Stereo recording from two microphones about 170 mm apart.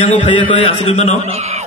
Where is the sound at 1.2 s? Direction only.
40° right (ahead or behind).